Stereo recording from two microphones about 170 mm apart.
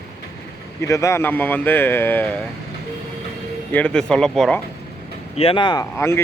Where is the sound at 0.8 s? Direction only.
20° left (ahead or behind).